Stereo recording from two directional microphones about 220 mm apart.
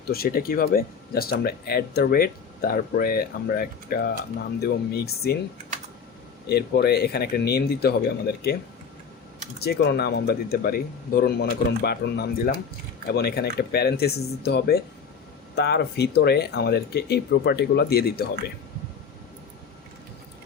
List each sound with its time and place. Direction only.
0.1 s speech: 45° left (ahead or behind)
6.5 s speech: 45° left (ahead or behind)